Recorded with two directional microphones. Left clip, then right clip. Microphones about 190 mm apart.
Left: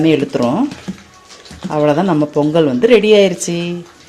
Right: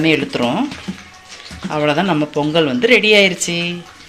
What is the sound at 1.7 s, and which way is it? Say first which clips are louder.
Speech: left 3 dB; 30° left (ahead or behind).